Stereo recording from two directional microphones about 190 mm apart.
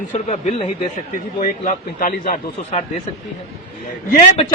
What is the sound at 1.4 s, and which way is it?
A man's voice, 45° left (ahead or behind).